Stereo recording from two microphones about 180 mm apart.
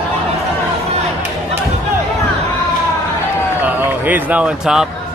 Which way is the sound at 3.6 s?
10° right (ahead or behind).